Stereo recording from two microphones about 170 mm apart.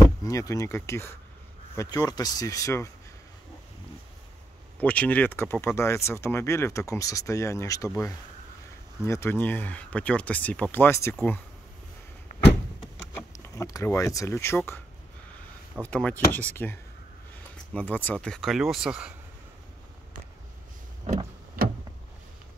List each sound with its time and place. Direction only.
0.2 s speech: 20° left (ahead or behind)
4.7 s speech: 10° left (ahead or behind)
12.3 s door: 50° left (ahead or behind)
13.3 s speech: 20° left (ahead or behind)
15.8 s speech: 10° left (ahead or behind)